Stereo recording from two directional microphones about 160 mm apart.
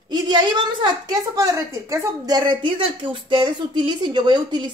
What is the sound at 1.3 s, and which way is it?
Speech, 20° right (ahead or behind).